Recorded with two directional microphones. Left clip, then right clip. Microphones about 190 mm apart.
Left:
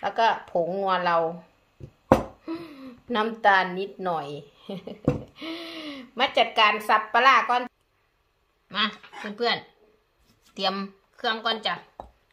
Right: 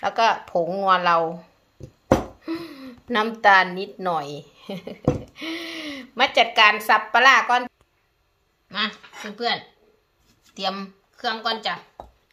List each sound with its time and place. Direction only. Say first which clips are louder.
0.0 s speech: right 3 dB; 15° right (ahead or behind)
2.4 s a woman's voice: right 4 dB; 15° right (ahead or behind)
8.6 s a sound: even; 15° left (ahead or behind)
8.9 s speech: right 1 dB; centre (ahead or behind)
10.5 s speech: even; 25° left (ahead or behind)